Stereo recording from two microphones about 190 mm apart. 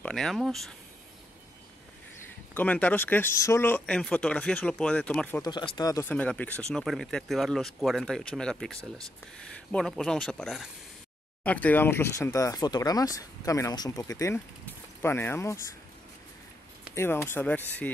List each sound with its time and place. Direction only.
0.0 s speech: 5° left (ahead or behind)
2.5 s speech: 10° left (ahead or behind)
5.4 s speech: 20° left (ahead or behind)
16.9 s speech: 10° left (ahead or behind)